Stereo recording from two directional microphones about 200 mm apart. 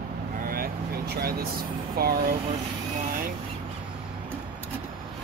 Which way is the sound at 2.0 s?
50° right (ahead or behind).